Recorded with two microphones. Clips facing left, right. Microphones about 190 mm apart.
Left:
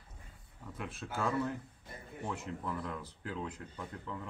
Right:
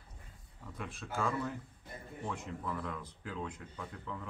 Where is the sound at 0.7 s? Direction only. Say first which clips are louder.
Even; centre (ahead or behind).